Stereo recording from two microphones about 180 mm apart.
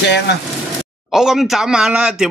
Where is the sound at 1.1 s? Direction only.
Centre (ahead or behind).